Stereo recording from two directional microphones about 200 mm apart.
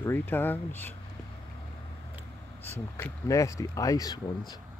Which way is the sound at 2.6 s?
10° left (ahead or behind).